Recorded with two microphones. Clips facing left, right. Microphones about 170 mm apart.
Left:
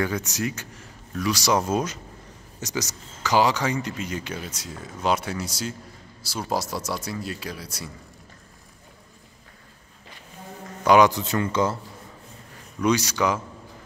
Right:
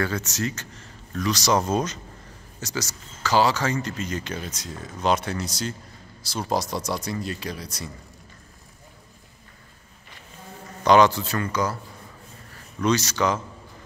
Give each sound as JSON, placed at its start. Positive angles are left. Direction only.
{"t": 0.0, "sound": "speech", "side_deg": 15}
{"t": 10.8, "sound": "speech", "side_deg": 10}
{"t": 12.8, "sound": "speech", "side_deg": 10}